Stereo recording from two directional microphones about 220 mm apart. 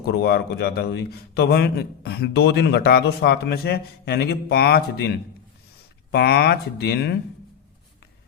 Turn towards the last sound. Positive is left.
turn(degrees=45)  # may be behind; listen again after turning